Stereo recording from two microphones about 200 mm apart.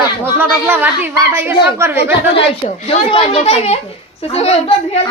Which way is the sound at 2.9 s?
30° left (ahead or behind).